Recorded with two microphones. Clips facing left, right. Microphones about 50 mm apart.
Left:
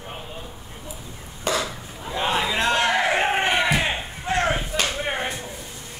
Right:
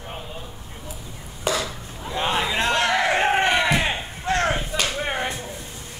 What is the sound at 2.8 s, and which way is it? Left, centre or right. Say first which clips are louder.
Crowd: right 2 dB; centre.